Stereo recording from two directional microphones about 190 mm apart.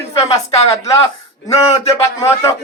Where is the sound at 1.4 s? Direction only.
15° left (ahead or behind).